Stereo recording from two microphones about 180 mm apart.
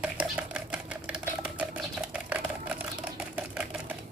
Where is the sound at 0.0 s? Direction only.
5° right (ahead or behind).